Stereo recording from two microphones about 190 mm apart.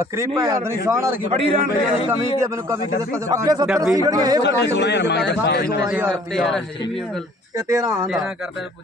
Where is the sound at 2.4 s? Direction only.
15° right (ahead or behind).